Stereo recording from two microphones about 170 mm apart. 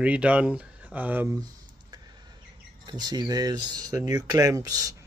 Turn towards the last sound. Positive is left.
turn(degrees=-20)  # may be behind; listen again after turning